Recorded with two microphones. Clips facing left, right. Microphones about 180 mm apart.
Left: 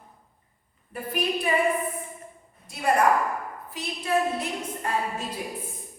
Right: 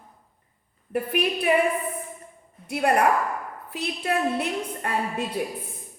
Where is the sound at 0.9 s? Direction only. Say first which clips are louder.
Right 3 dB; 65° right (ahead or behind).